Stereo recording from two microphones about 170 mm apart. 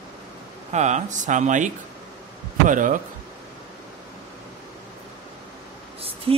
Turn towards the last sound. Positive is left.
turn(degrees=-35)  # may be behind; listen again after turning